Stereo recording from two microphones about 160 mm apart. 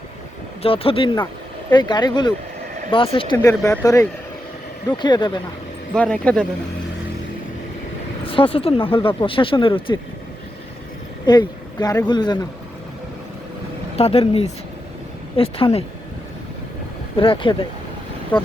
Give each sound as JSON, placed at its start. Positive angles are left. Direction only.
{"t": 0.6, "sound": "speech", "side_deg": 35}
{"t": 3.3, "sound": "speech", "side_deg": 20}
{"t": 5.9, "sound": "speech", "side_deg": 5}
{"t": 8.2, "sound": "speech", "side_deg": 35}
{"t": 11.3, "sound": "speech", "side_deg": 25}
{"t": 13.9, "sound": "speech", "side_deg": 40}
{"t": 17.2, "sound": "speech", "side_deg": 35}